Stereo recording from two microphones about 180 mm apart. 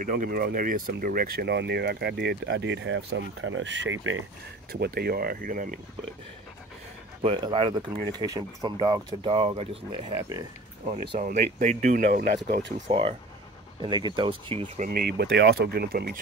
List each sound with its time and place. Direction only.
0.0 s speech: 50° right (ahead or behind); by 4.2 s 90° right
4.7 s speech: 60° right (ahead or behind)
7.2 s speech: 30° right (ahead or behind)
11.1 s speech: 40° right (ahead or behind)
12.9 s speech: 30° right (ahead or behind)
14.9 s speech: 60° right (ahead or behind)